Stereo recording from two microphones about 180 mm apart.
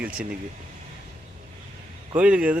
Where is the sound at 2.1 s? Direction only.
5° right (ahead or behind).